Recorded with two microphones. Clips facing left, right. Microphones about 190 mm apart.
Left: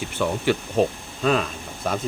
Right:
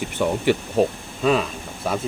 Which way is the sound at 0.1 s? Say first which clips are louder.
Right 2 dB; 15° right (ahead or behind).